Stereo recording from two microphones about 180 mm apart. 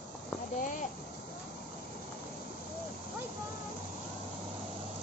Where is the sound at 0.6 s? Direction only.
45° left (ahead or behind).